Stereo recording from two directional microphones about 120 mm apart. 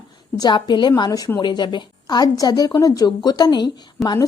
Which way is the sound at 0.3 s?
35° left (ahead or behind).